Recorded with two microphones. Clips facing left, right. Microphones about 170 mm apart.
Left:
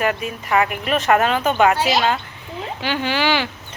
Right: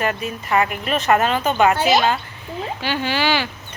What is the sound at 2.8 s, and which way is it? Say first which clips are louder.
Speech: left 1 dB; 15° left (ahead or behind).